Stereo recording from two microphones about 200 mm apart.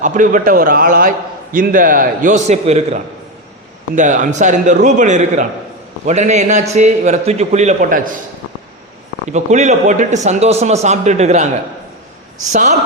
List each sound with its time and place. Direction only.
0.0 s a man's voice: 40° right (ahead or behind)
9.3 s a man's voice: 35° right (ahead or behind)
12.5 s a man's voice: 35° right (ahead or behind)